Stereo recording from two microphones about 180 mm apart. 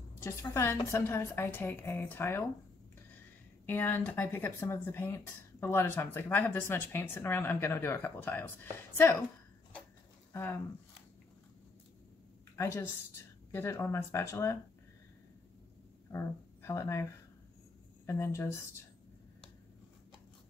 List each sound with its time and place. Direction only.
0.2 s speech: 15° left (ahead or behind)
3.6 s speech: 10° left (ahead or behind)
10.3 s speech: 15° left (ahead or behind)
12.5 s speech: 15° left (ahead or behind)
16.1 s speech: 15° left (ahead or behind)